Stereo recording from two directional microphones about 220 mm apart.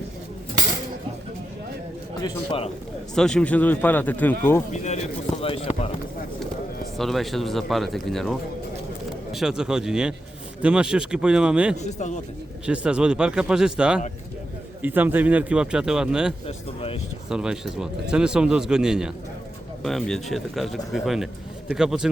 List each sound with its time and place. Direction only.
2.2 s speech: 25° left (ahead or behind)
3.2 s speech: 5° left (ahead or behind)
5.4 s speech: 25° left (ahead or behind)
6.9 s speech: centre (ahead or behind)
11.8 s a man's voice: 35° left (ahead or behind)
12.6 s speech: 5° right (ahead or behind)
16.5 s speech: 25° left (ahead or behind)
17.2 s speech: 5° right (ahead or behind)